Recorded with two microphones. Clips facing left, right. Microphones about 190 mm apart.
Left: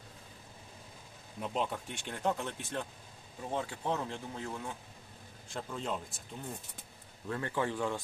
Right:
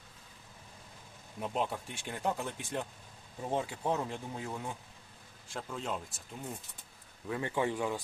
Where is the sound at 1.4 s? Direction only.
Centre (ahead or behind).